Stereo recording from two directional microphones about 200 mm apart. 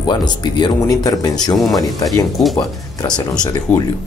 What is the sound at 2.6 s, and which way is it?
Speech, 20° left (ahead or behind).